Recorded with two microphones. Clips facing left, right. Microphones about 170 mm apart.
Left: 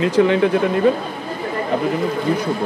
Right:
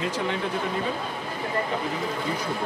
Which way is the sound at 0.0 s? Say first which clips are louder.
Left 13 dB; 85° left.